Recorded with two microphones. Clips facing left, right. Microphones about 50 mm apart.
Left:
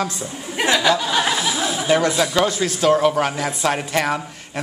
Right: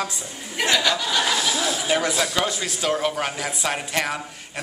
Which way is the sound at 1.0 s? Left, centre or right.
Left.